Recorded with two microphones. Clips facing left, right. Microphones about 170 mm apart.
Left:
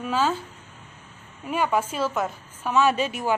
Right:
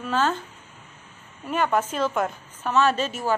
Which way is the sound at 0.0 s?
10° left (ahead or behind).